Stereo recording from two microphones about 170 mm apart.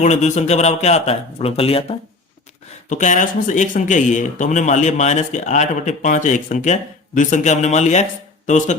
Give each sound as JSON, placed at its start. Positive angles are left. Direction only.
{"t": 0.0, "sound": "speech", "side_deg": 45}
{"t": 2.9, "sound": "speech", "side_deg": 45}